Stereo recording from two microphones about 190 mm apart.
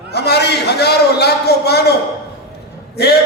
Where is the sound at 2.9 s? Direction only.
55° left (ahead or behind).